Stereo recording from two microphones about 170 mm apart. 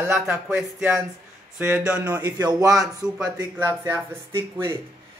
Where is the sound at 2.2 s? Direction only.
25° right (ahead or behind).